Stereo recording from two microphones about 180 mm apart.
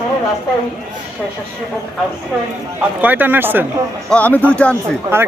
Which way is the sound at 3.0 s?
10° right (ahead or behind).